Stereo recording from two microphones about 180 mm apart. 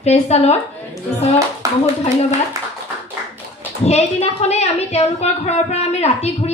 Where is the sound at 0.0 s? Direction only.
35° left (ahead or behind).